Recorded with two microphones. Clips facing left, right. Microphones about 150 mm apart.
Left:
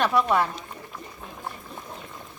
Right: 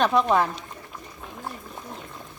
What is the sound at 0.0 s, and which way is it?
Speech, 20° right (ahead or behind).